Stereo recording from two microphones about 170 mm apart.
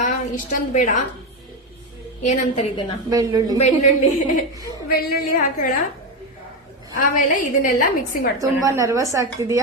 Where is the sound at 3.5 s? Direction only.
45° left (ahead or behind).